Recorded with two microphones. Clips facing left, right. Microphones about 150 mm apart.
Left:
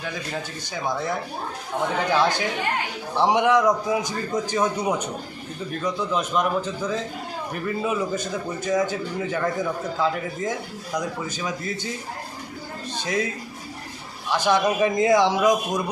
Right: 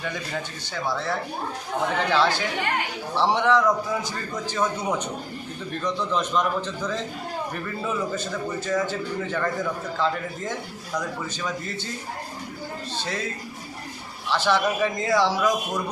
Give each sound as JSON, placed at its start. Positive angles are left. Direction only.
{"t": 0.0, "sound": "speech", "side_deg": 0}
{"t": 0.7, "sound": "a man's voice", "side_deg": 15}
{"t": 13.0, "sound": "speech", "side_deg": 15}
{"t": 14.3, "sound": "a man's voice", "side_deg": 15}